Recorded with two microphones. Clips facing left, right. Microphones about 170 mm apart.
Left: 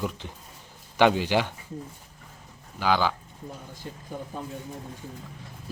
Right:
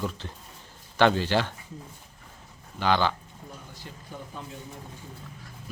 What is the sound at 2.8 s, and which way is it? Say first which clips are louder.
Speech: even; 5° left (ahead or behind).